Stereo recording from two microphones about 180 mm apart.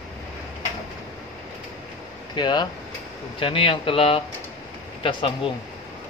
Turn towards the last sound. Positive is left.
turn(degrees=30)  # may be behind; listen again after turning